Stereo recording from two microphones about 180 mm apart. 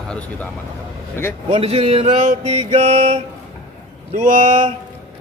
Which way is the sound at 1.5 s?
35° right (ahead or behind).